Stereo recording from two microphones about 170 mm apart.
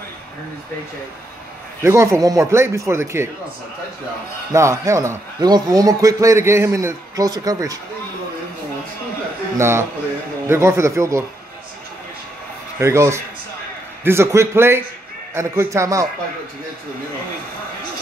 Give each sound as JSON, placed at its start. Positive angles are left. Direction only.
{"t": 1.8, "sound": "speech", "side_deg": -15}
{"t": 4.5, "sound": "a man's voice", "side_deg": -15}
{"t": 9.6, "sound": "speech", "side_deg": -15}
{"t": 12.7, "sound": "speech", "side_deg": -15}